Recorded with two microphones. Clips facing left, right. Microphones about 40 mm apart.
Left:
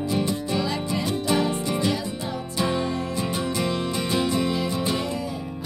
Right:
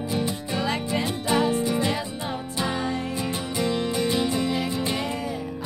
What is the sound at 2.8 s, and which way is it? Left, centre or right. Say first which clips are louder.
Music: left 1 dB; right.